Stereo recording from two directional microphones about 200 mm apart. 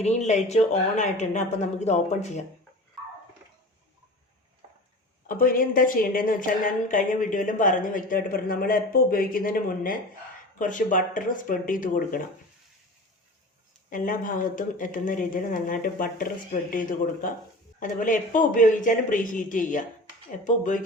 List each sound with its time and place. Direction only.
0.0 s a woman's voice: 35° left (ahead or behind)
5.3 s speech: 45° left (ahead or behind)
13.9 s a woman's voice: 45° left (ahead or behind)